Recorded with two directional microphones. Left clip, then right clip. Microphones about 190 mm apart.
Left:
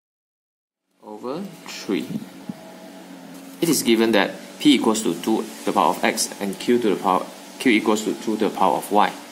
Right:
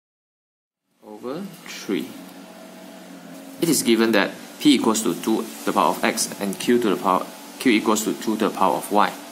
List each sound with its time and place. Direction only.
1.2 s speech: 10° left (ahead or behind)
3.5 s speech: centre (ahead or behind)
6.6 s speech: 20° right (ahead or behind)
7.1 s speech: centre (ahead or behind)
7.9 s speech: 15° right (ahead or behind)
8.5 s speech: 5° right (ahead or behind)